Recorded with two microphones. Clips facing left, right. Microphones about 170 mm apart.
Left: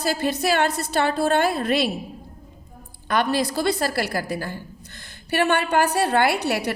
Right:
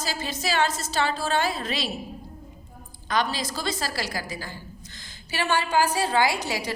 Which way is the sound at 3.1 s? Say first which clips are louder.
Left 5 dB; 60° left (ahead or behind).